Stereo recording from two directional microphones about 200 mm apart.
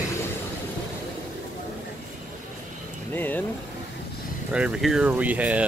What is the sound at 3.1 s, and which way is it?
Speech, 10° left (ahead or behind).